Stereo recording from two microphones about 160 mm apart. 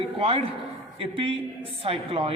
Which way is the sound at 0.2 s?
40° right (ahead or behind).